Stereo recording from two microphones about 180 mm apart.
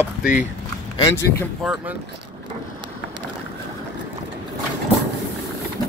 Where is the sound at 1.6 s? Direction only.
5° right (ahead or behind).